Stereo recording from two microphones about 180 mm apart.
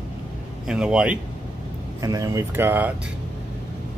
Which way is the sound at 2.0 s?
20° right (ahead or behind).